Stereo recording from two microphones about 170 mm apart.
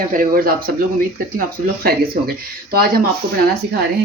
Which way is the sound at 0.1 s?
55° right (ahead or behind).